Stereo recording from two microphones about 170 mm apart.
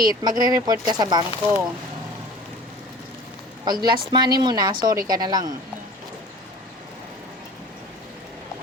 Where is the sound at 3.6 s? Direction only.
25° right (ahead or behind).